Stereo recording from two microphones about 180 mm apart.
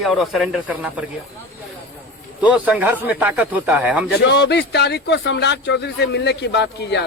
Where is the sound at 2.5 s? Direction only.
10° right (ahead or behind).